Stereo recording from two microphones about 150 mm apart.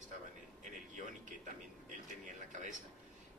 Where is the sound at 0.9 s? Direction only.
55° right (ahead or behind).